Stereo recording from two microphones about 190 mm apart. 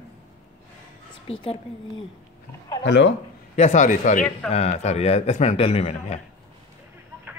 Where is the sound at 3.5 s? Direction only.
40° left (ahead or behind).